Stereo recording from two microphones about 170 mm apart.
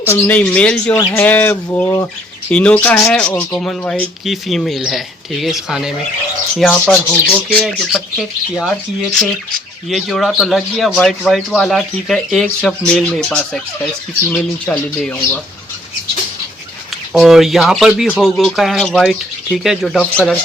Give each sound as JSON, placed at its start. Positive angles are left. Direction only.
{"t": 0.1, "sound": "speech", "side_deg": 10}
{"t": 9.9, "sound": "speech", "side_deg": 0}
{"t": 17.1, "sound": "speech", "side_deg": 0}